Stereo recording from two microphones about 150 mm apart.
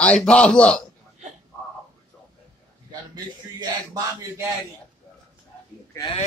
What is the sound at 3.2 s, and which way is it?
A man's voice, 25° right (ahead or behind).